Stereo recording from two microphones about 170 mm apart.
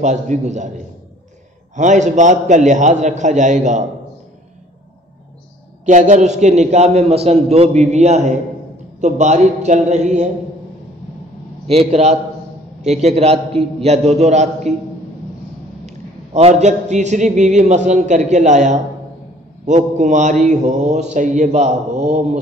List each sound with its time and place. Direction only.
0.0 s mantra: 45° right (ahead or behind)
1.8 s mantra: 45° right (ahead or behind)
5.9 s a man's voice: 45° right (ahead or behind)
9.0 s mantra: 45° right (ahead or behind)
11.6 s a man's voice: 35° right (ahead or behind)
16.3 s mantra: 40° right (ahead or behind)